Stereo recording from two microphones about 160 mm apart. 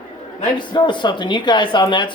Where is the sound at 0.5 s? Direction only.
30° left (ahead or behind).